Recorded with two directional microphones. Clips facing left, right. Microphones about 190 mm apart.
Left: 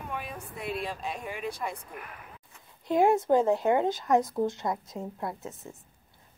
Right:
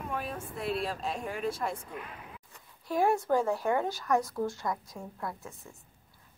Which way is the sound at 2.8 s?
20° left (ahead or behind).